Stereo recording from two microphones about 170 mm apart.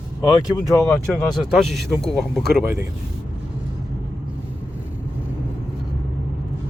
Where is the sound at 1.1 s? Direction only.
5° left (ahead or behind).